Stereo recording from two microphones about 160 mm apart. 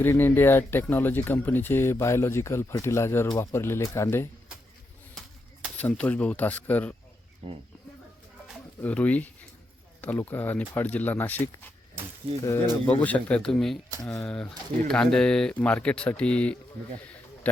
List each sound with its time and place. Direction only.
0.0 s speech: 15° left (ahead or behind)
5.7 s speech: 10° left (ahead or behind)
7.4 s speech: 35° right (ahead or behind)
8.8 s speech: 10° left (ahead or behind)
12.8 s speech: 10° left (ahead or behind)